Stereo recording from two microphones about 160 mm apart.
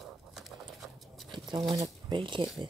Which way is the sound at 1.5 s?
25° right (ahead or behind).